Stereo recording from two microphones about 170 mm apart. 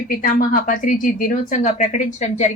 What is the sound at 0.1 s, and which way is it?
Speech, 55° left (ahead or behind).